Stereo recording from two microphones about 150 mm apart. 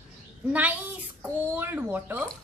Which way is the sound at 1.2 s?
15° right (ahead or behind).